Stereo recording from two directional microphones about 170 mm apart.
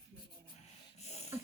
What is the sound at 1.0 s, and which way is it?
Snort, 40° left (ahead or behind).